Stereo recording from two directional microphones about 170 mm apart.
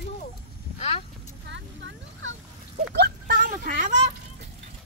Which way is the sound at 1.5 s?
90° right.